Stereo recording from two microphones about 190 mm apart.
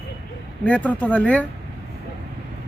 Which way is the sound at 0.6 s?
5° left (ahead or behind).